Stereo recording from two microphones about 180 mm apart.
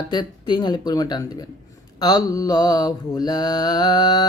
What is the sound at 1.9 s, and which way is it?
Mantra, 20° left (ahead or behind).